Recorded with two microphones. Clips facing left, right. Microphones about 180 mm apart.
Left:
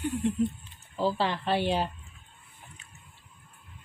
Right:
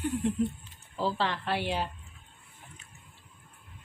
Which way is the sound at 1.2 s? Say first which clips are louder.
Left 4 dB; 25° left (ahead or behind).